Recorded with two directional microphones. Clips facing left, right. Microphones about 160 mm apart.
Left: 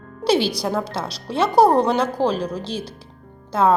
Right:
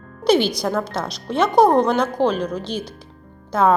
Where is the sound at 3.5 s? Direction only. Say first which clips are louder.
Right 1 dB; 5° left (ahead or behind).